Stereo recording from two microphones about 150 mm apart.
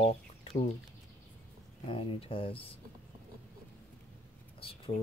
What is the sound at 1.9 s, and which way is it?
Speech, 35° left (ahead or behind).